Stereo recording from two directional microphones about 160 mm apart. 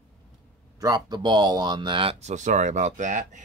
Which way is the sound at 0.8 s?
25° right (ahead or behind).